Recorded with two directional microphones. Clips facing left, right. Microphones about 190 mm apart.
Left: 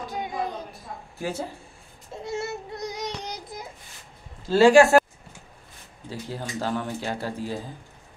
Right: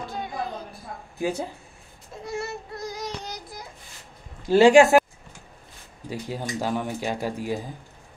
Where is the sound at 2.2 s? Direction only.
20° left (ahead or behind).